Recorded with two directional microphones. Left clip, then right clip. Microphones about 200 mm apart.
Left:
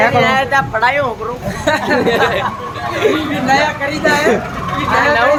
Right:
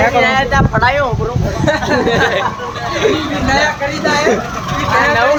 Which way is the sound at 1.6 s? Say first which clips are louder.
Even; 40° left (ahead or behind).